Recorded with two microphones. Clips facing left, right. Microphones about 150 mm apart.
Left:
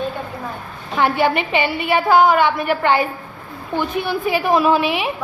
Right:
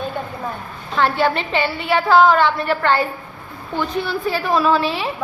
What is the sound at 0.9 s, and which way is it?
A woman's voice, 15° left (ahead or behind).